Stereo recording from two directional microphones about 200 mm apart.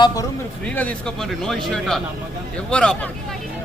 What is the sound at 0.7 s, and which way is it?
A man's voice, 5° left (ahead or behind).